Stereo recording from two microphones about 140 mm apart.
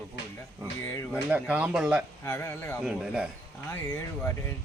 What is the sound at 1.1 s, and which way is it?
Speech, 5° right (ahead or behind).